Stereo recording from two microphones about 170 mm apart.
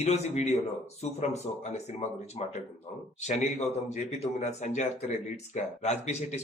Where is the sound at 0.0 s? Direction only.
40° left (ahead or behind).